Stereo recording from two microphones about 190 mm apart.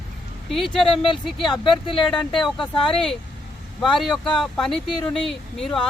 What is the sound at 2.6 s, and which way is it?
Speech, 25° left (ahead or behind).